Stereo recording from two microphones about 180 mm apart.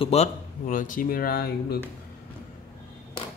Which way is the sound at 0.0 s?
35° left (ahead or behind).